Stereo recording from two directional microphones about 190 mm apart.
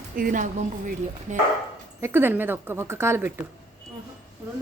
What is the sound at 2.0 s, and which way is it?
A woman's voice, 10° right (ahead or behind).